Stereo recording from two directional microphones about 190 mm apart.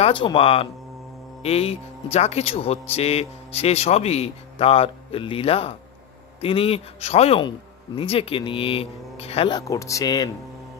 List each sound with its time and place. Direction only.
0.0 s speech: 25° left (ahead or behind)